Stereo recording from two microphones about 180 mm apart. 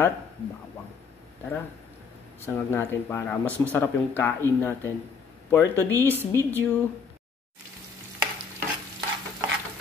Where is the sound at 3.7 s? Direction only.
10° left (ahead or behind).